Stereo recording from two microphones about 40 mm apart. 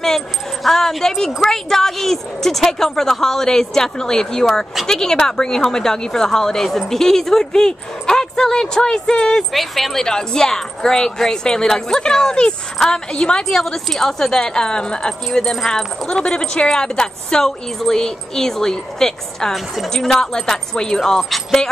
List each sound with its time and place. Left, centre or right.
0.7 s speech: centre
9.5 s speech: centre
10.0 s a woman's voice: centre
14.4 s a woman's voice: left
16.1 s speech: left
19.5 s speech: centre
19.9 s speech: centre